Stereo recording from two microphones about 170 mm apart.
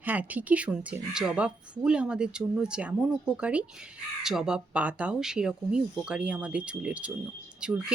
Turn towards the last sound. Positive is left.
turn(degrees=-5)  # may be behind; listen again after turning